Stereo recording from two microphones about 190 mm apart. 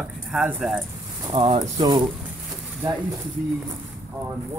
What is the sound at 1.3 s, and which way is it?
Speech, 25° right (ahead or behind).